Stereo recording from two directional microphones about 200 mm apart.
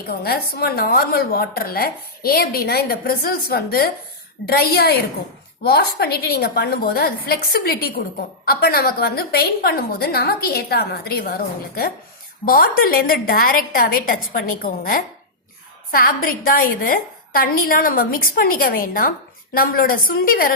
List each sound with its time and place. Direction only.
0.1 s a woman's voice: 50° left (ahead or behind)